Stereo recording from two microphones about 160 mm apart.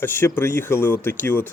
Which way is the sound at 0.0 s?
15° left (ahead or behind).